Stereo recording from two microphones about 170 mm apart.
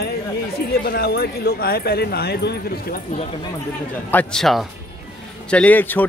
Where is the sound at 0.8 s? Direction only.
65° left (ahead or behind).